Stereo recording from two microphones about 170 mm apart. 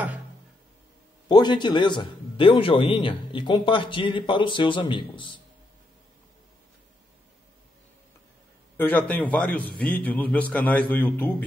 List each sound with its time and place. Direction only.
1.3 s a man's voice: 25° left (ahead or behind)
8.7 s a man's voice: 10° left (ahead or behind)